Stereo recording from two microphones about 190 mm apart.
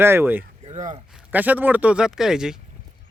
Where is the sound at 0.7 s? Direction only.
35° right (ahead or behind).